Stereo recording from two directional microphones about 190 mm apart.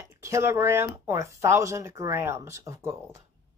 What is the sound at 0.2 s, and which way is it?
Speech, 15° right (ahead or behind).